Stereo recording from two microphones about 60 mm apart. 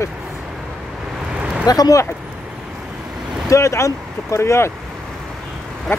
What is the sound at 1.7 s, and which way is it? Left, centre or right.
Speech, left.